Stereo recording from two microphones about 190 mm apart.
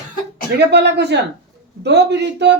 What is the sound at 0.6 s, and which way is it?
Female singing, 65° right (ahead or behind).